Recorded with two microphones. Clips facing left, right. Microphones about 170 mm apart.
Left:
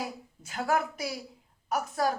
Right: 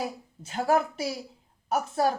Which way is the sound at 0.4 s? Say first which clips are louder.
Right 4 dB; 30° right (ahead or behind).